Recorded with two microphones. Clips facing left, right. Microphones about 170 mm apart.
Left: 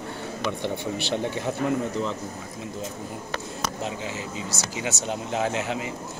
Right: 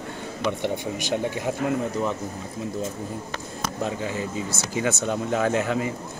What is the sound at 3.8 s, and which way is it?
Speech, 50° right (ahead or behind).